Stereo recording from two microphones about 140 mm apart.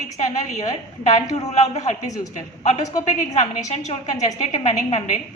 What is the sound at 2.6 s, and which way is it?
A woman's voice, 55° left (ahead or behind).